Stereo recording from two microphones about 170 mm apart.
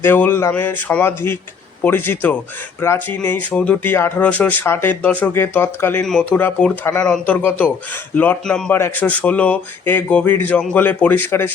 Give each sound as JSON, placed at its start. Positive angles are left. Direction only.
{"t": 0.0, "sound": "speech", "side_deg": 10}